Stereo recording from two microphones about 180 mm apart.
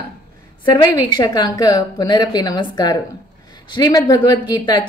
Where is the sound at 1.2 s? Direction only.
20° left (ahead or behind).